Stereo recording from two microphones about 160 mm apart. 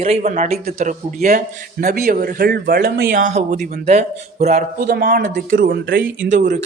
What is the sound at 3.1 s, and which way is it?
A man's voice, 50° right (ahead or behind).